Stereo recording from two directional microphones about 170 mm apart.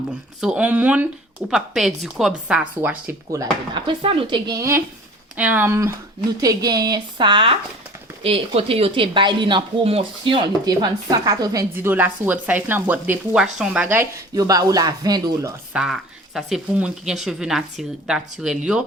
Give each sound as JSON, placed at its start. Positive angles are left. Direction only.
{"t": 0.4, "sound": "speech", "side_deg": -10}
{"t": 15.7, "sound": "speech", "side_deg": -5}